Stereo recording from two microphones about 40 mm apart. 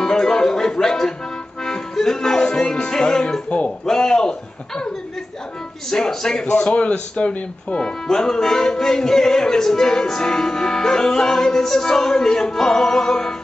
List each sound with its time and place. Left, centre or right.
0.0 s music: centre
3.4 s speech: left
3.8 s music: centre
6.4 s a man's voice: left
7.8 s music: centre